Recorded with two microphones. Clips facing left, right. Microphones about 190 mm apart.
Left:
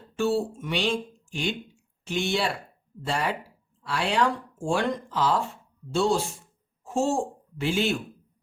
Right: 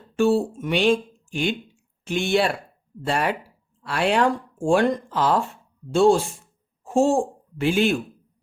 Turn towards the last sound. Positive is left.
turn(degrees=-55)  # may be behind; listen again after turning